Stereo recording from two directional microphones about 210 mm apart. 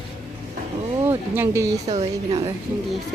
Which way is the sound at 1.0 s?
10° right (ahead or behind).